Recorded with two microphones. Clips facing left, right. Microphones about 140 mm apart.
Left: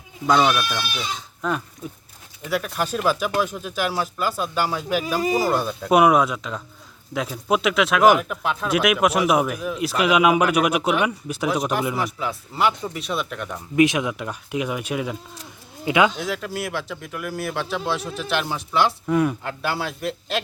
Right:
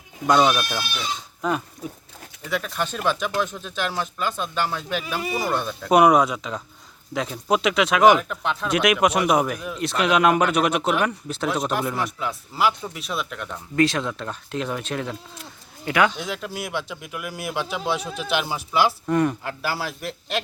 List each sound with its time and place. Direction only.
0.4 s speech: 15° right (ahead or behind)
1.4 s livestock: 5° right (ahead or behind)
2.4 s speech: 5° left (ahead or behind)
5.0 s speech: 40° left (ahead or behind)
5.5 s speech: 5° left (ahead or behind)
13.5 s speech: 15° left (ahead or behind)
16.1 s speech: centre (ahead or behind)